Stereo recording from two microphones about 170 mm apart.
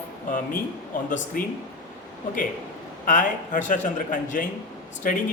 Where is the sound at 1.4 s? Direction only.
55° left (ahead or behind).